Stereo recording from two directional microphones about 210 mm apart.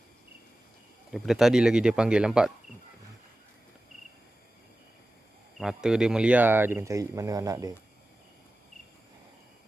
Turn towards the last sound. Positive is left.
turn(degrees=-15)  # may be behind; listen again after turning